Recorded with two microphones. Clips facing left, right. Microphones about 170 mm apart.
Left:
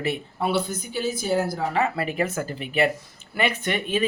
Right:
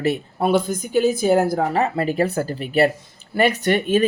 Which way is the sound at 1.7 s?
35° right (ahead or behind).